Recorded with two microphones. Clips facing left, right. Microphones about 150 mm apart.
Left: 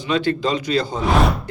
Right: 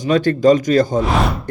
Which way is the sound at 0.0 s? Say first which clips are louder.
Right 7 dB; 45° right (ahead or behind).